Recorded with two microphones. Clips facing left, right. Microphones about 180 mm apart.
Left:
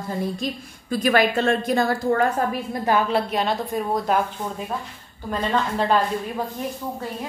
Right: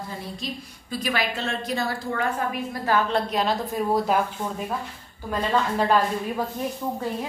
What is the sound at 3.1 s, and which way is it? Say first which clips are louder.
Speech: left 1 dB; centre (ahead or behind).